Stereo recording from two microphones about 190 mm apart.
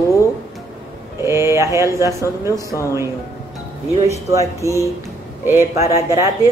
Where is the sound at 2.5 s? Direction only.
15° left (ahead or behind).